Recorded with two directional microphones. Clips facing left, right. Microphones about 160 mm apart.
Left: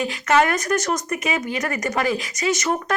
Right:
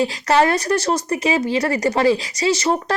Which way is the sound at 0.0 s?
30° right (ahead or behind).